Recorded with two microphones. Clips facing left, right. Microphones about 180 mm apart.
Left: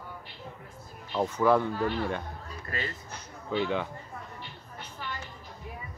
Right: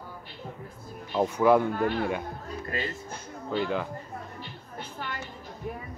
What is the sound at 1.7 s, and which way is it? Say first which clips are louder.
Speech: right 2 dB; 50° right (ahead or behind).